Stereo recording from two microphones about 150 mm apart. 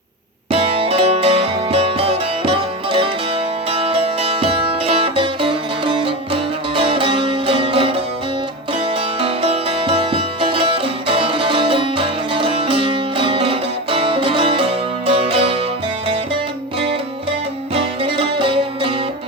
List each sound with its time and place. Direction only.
0.5 s music: 40° right (ahead or behind)
9.2 s music: 40° right (ahead or behind)
17.7 s music: 35° right (ahead or behind)